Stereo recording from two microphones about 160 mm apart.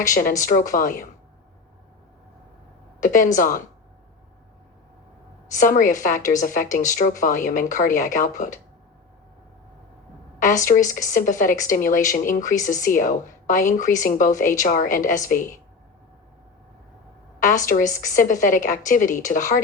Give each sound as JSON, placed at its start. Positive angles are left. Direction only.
{"t": 0.1, "sound": "a woman's voice", "side_deg": 55}
{"t": 3.0, "sound": "a woman's voice", "side_deg": 55}
{"t": 5.5, "sound": "a woman's voice", "side_deg": 55}
{"t": 10.6, "sound": "a woman's voice", "side_deg": 55}
{"t": 17.7, "sound": "a woman's voice", "side_deg": 55}